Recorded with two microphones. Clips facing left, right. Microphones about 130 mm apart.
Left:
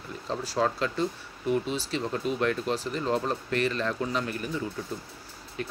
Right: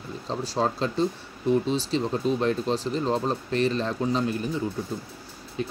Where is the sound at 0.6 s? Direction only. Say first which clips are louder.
Right 2 dB; 25° right (ahead or behind).